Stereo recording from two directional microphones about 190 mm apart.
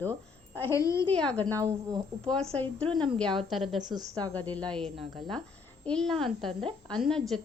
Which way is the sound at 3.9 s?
20° right (ahead or behind).